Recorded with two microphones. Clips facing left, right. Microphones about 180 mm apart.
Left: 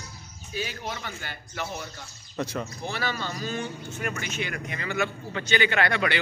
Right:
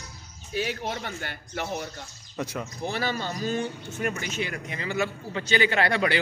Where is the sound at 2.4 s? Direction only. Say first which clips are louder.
Even; 10° right (ahead or behind).